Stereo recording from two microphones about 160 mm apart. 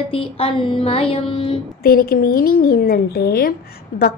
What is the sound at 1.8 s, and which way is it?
Speech, 70° left (ahead or behind).